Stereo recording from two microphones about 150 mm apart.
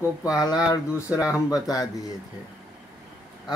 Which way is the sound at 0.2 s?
25° left (ahead or behind).